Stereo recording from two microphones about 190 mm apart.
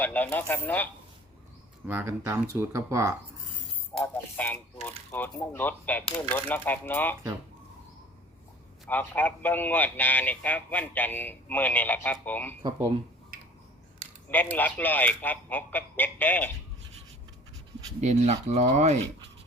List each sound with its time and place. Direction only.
0.0 s speech: 10° left (ahead or behind)
1.9 s speech: 10° right (ahead or behind)
4.0 s a man's voice: 10° left (ahead or behind)
8.9 s a man's voice: 10° left (ahead or behind)
13.3 s a sound: 50° right (ahead or behind)
14.3 s a man's voice: 10° left (ahead or behind)
18.0 s speech: 40° right (ahead or behind)